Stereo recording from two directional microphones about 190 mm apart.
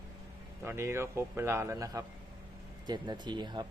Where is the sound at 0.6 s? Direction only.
15° right (ahead or behind).